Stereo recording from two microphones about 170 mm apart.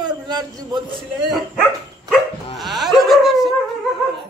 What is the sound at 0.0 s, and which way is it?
A man's voice, 25° right (ahead or behind).